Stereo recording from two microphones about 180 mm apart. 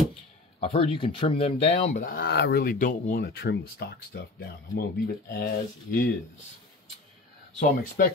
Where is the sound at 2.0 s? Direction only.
60° left (ahead or behind).